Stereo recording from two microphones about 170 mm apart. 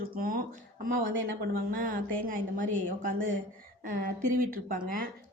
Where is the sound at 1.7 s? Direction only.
55° right (ahead or behind).